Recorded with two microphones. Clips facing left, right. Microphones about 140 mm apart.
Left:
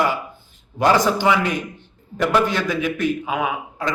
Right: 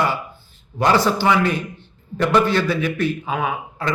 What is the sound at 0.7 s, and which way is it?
A man's voice, 15° left (ahead or behind).